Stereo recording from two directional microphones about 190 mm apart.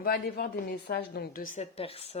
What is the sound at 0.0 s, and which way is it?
A woman's voice, 55° left (ahead or behind).